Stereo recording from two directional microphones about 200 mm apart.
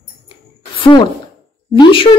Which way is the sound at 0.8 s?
20° left (ahead or behind).